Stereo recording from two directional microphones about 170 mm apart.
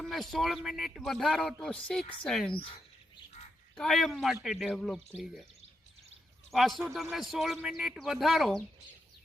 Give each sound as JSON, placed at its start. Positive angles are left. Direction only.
{"t": 0.0, "sound": "a man's voice", "side_deg": 0}
{"t": 3.8, "sound": "a man's voice", "side_deg": 0}
{"t": 6.5, "sound": "a man's voice", "side_deg": 0}